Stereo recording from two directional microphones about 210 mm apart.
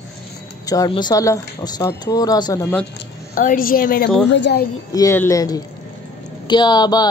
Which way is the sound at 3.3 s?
40° left (ahead or behind).